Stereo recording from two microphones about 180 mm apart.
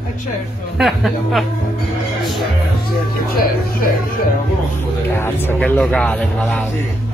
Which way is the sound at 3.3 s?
55° left (ahead or behind).